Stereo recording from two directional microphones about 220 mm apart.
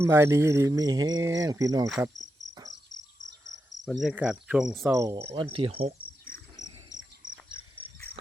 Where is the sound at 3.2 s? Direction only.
15° right (ahead or behind).